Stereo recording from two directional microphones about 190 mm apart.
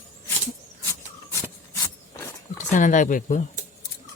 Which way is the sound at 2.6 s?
40° left (ahead or behind).